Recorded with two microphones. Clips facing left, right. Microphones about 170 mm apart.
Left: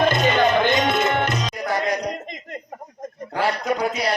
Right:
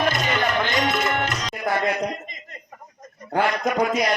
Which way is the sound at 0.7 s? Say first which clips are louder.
Left 3 dB; 20° left (ahead or behind).